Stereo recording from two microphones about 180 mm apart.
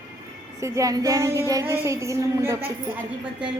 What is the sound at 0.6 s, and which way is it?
Music, 20° right (ahead or behind).